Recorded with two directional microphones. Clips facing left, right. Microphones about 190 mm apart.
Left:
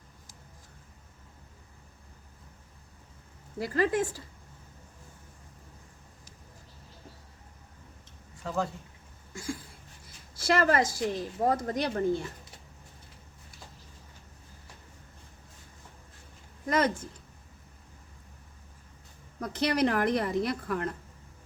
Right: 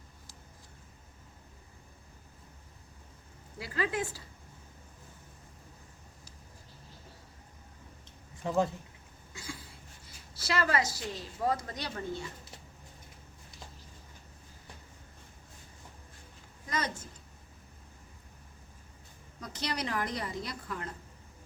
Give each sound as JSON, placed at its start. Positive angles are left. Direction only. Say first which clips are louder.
{"t": 3.6, "sound": "a woman's voice", "louder": "left 6 dB", "side_deg": 45}
{"t": 9.3, "sound": "a sound", "louder": "left 8 dB", "side_deg": 50}
{"t": 10.3, "sound": "a woman's voice", "louder": "left 6 dB", "side_deg": 50}
{"t": 16.6, "sound": "a woman's voice", "louder": "left 9 dB", "side_deg": 55}
{"t": 19.4, "sound": "a woman's voice", "louder": "left 10 dB", "side_deg": 55}